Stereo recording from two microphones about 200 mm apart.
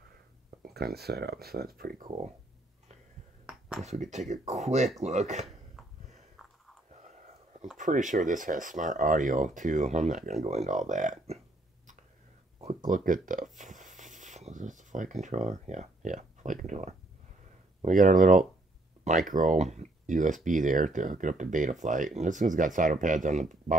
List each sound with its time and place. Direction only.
0.6 s speech: 50° right (ahead or behind)
3.4 s a sound: 5° right (ahead or behind)
3.8 s speech: 35° right (ahead or behind)
6.9 s whispering: 35° right (ahead or behind)
7.7 s speech: 40° right (ahead or behind)
12.5 s speech: 35° right (ahead or behind)